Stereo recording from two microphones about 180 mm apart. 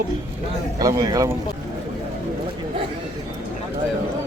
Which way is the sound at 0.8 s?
20° right (ahead or behind).